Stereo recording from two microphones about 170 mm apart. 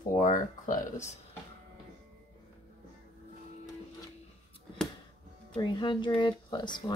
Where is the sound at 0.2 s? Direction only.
50° left (ahead or behind).